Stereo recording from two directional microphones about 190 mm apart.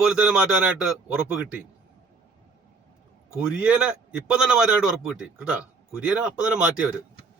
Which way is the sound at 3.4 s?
5° right (ahead or behind).